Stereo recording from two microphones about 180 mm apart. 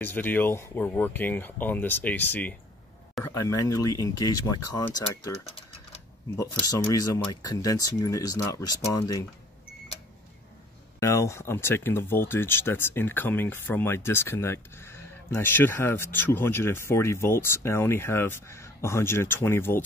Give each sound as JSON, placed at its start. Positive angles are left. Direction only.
{"t": 0.0, "sound": "speech", "side_deg": 10}
{"t": 6.3, "sound": "speech", "side_deg": 20}
{"t": 11.0, "sound": "speech", "side_deg": 15}